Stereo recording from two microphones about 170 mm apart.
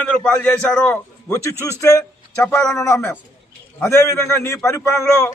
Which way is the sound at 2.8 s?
15° left (ahead or behind).